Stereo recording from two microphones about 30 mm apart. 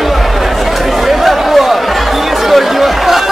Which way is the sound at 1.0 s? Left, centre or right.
Centre.